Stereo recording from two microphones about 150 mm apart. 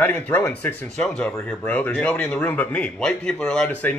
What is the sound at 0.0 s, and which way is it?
A man's voice, 15° left (ahead or behind).